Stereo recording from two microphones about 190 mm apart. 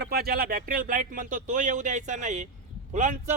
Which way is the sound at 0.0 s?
55° right (ahead or behind).